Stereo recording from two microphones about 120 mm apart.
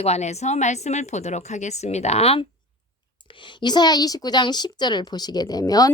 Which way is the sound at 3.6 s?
35° left (ahead or behind).